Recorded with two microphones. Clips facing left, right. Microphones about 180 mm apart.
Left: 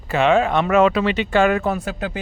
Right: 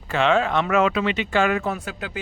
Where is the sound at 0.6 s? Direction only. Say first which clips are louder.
Left 4 dB; 35° left (ahead or behind).